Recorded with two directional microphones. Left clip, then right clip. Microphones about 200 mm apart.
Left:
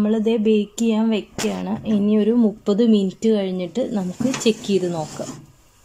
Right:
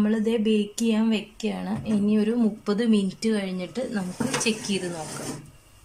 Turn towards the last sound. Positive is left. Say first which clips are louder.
# left 8 dB
turn(degrees=20)  # may be behind; listen again after turning